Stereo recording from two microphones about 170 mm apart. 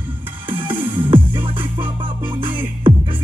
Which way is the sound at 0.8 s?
10° right (ahead or behind).